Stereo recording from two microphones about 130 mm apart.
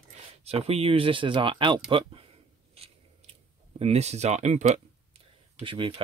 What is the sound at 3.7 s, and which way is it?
Speech, 55° right (ahead or behind).